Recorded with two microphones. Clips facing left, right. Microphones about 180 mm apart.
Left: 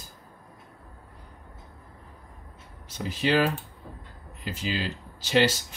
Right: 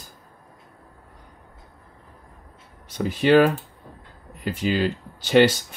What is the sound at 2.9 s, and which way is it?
Speech, 55° right (ahead or behind).